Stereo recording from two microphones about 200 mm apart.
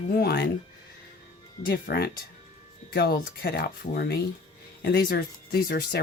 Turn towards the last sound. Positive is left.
turn(degrees=50)  # may be behind; listen again after turning